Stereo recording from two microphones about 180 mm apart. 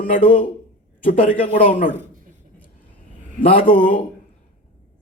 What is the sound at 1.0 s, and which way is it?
Speech, 50° left (ahead or behind).